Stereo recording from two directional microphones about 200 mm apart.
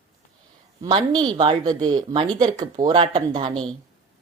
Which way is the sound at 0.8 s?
20° right (ahead or behind).